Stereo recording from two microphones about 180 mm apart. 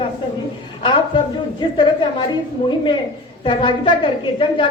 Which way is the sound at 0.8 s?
25° left (ahead or behind).